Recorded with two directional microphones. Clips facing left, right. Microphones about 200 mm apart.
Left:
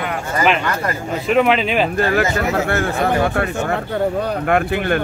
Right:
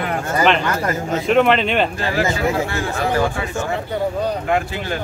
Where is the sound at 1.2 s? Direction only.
Centre (ahead or behind).